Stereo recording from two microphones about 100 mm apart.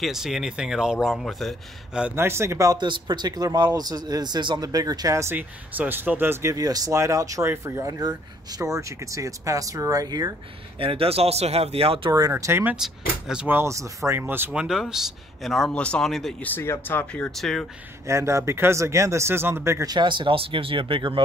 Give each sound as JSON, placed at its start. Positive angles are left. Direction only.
{"t": 0.0, "sound": "speech", "side_deg": -5}
{"t": 2.1, "sound": "speech", "side_deg": -25}
{"t": 2.8, "sound": "speech", "side_deg": -50}
{"t": 5.3, "sound": "speech", "side_deg": -20}
{"t": 6.5, "sound": "speech", "side_deg": -40}
{"t": 10.8, "sound": "speech", "side_deg": -70}
{"t": 12.1, "sound": "speech", "side_deg": -35}
{"t": 12.7, "sound": "speech", "side_deg": -5}
{"t": 13.5, "sound": "speech", "side_deg": -25}
{"t": 14.5, "sound": "speech", "side_deg": -5}
{"t": 16.4, "sound": "speech", "side_deg": 20}
{"t": 17.4, "sound": "speech", "side_deg": 5}
{"t": 18.0, "sound": "speech", "side_deg": -30}
{"t": 19.9, "sound": "speech", "side_deg": -50}